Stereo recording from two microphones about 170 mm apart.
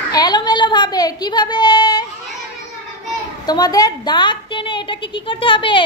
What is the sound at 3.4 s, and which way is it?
A woman's voice, 25° left (ahead or behind).